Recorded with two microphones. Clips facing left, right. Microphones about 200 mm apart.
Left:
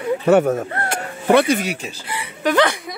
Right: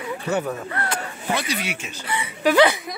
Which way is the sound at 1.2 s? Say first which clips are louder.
Left 13 dB; 55° left (ahead or behind).